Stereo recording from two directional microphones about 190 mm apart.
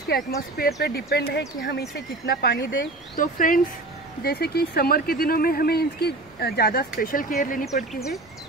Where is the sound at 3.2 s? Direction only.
45° left (ahead or behind).